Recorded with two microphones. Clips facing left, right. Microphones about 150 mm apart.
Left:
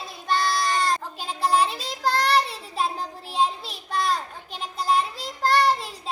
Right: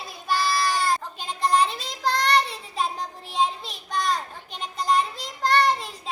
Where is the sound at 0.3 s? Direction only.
5° right (ahead or behind).